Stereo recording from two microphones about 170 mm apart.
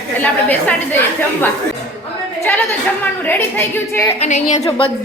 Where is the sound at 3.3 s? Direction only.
10° left (ahead or behind).